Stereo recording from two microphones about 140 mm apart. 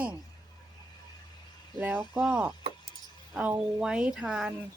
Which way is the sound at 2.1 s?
10° right (ahead or behind).